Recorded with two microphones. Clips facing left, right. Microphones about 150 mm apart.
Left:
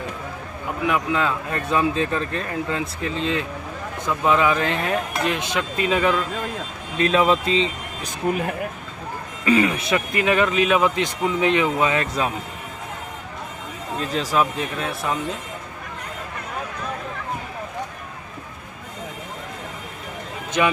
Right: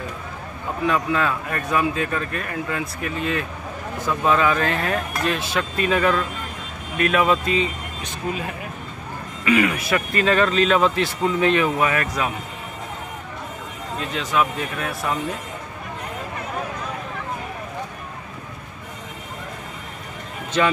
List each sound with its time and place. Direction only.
0.8 s speech: 15° left (ahead or behind)
8.3 s speech: 55° left (ahead or behind)
9.4 s speech: 30° left (ahead or behind)
13.9 s speech: 35° left (ahead or behind)
20.6 s speech: 15° left (ahead or behind)